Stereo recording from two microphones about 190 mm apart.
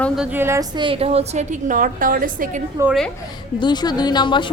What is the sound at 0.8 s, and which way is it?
A woman's voice, 30° right (ahead or behind).